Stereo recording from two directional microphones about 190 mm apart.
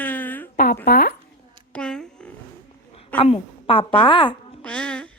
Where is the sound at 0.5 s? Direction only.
50° left (ahead or behind).